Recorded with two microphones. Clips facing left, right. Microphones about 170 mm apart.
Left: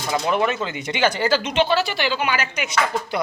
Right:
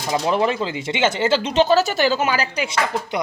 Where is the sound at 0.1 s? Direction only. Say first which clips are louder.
Right 2 dB; 30° right (ahead or behind).